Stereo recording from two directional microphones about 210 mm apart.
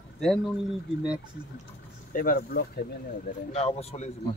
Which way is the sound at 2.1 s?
45° left (ahead or behind).